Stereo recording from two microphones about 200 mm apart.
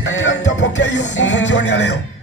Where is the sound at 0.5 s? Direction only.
65° left (ahead or behind).